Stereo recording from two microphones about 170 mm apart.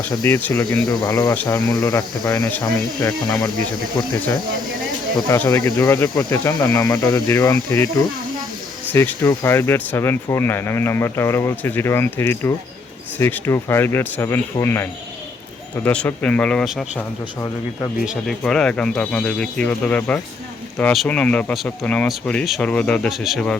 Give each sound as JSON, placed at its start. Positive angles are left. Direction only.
{"t": 0.0, "sound": "speech", "side_deg": 10}
{"t": 0.6, "sound": "speech", "side_deg": 20}
{"t": 5.3, "sound": "speech", "side_deg": 15}
{"t": 18.0, "sound": "speech", "side_deg": 0}